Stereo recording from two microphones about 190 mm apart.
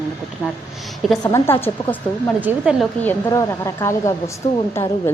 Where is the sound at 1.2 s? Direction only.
15° left (ahead or behind).